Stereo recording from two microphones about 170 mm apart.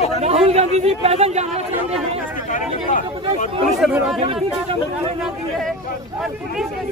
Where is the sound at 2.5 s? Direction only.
50° left (ahead or behind).